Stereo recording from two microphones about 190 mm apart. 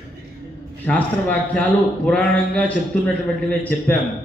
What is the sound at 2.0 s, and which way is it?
A man's voice, 5° left (ahead or behind).